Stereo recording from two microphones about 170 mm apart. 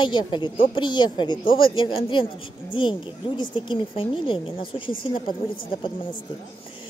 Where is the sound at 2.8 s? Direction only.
30° left (ahead or behind).